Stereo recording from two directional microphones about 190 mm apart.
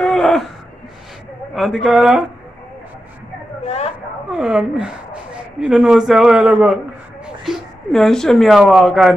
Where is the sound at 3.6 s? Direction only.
35° left (ahead or behind).